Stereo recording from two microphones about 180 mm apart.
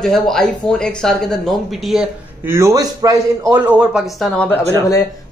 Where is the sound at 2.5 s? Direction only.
15° right (ahead or behind).